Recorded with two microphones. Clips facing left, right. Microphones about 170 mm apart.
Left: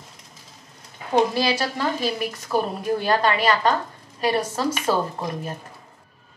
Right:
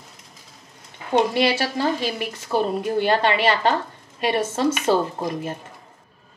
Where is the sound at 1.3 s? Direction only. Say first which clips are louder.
Right 2 dB; 25° right (ahead or behind).